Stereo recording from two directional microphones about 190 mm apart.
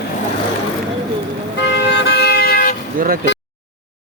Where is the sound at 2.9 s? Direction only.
50° right (ahead or behind).